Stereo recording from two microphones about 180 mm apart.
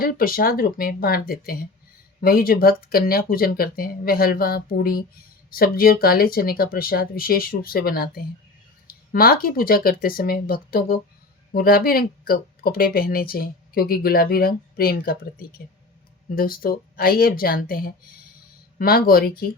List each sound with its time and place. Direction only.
0.0 s speech: 55° left (ahead or behind)